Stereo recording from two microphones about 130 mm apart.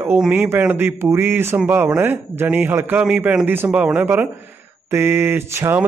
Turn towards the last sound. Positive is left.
turn(degrees=-20)  # may be behind; listen again after turning